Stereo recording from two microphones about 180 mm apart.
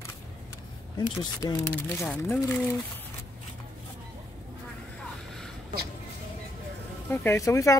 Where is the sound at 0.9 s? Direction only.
25° left (ahead or behind).